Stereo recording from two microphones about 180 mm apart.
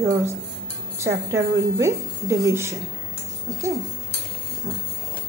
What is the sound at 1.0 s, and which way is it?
A woman's voice, 15° right (ahead or behind).